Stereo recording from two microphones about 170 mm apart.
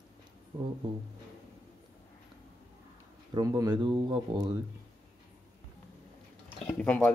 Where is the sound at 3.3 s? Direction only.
20° right (ahead or behind).